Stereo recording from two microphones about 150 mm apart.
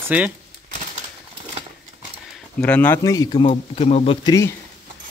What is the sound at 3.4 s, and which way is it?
Speech, 45° left (ahead or behind).